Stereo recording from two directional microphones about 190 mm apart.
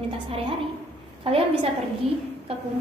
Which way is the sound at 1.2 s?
30° right (ahead or behind).